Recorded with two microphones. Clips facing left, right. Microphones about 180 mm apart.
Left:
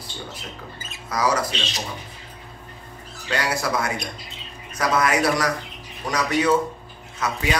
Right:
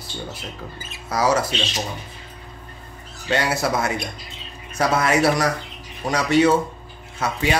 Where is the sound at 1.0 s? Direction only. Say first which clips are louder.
Right 3 dB; 25° right (ahead or behind).